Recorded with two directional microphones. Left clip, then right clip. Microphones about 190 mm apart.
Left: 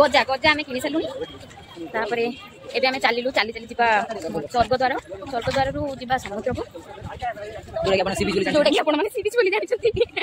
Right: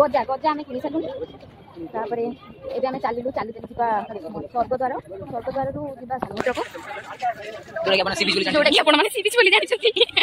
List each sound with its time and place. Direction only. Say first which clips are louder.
0.0 s a woman's voice: left 2 dB; 25° left (ahead or behind)
2.0 s a woman's voice: left 2 dB; 20° left (ahead or behind)
4.4 s speech: left 3 dB; 45° left (ahead or behind)
4.7 s a woman's voice: left 3 dB; 25° left (ahead or behind)
6.5 s a woman's voice: right 3 dB; 10° left (ahead or behind)
7.8 s speech: right 1 dB; 55° left (ahead or behind)
8.5 s a woman's voice: right 1 dB; 15° left (ahead or behind)
8.8 s a woman's voice: right 4 dB; centre (ahead or behind)